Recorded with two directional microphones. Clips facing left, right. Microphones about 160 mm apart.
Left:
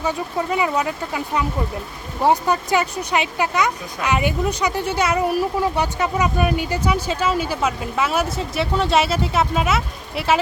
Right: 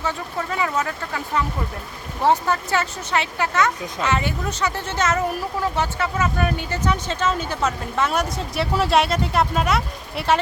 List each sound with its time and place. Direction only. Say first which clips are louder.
0.0 s speech: left 4 dB; 15° left (ahead or behind)